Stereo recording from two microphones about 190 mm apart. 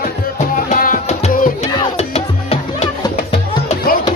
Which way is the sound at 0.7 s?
45° left (ahead or behind).